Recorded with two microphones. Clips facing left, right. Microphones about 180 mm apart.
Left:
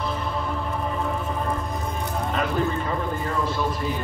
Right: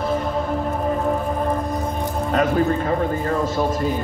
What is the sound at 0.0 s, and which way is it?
Music, 45° right (ahead or behind).